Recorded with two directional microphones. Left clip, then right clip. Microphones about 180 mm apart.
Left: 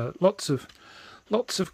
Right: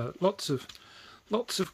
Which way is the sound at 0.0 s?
40° left (ahead or behind).